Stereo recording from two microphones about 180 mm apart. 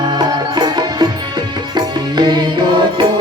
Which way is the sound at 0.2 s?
25° right (ahead or behind).